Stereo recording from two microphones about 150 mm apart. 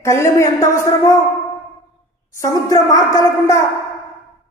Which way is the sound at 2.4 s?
25° left (ahead or behind).